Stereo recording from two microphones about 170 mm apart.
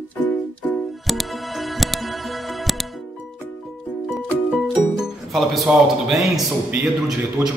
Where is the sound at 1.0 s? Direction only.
Centre (ahead or behind).